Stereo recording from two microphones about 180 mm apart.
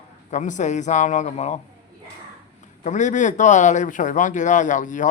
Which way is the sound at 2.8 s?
45° left (ahead or behind).